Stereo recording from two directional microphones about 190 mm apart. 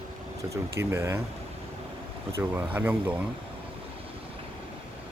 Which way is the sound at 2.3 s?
10° right (ahead or behind).